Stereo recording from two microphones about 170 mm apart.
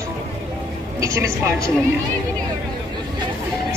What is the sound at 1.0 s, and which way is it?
Speech, 15° right (ahead or behind).